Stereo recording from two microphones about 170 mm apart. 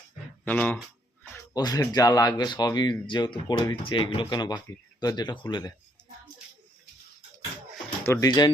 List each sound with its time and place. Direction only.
0.4 s speech: 10° left (ahead or behind)
1.5 s speech: 20° left (ahead or behind)
8.0 s speech: 20° left (ahead or behind)